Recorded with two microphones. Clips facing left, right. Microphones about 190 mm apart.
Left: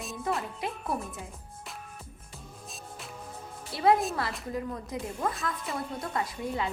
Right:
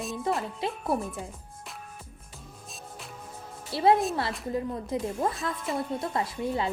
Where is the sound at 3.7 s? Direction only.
25° right (ahead or behind).